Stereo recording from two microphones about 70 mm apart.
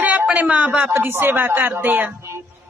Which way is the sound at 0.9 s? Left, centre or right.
Right.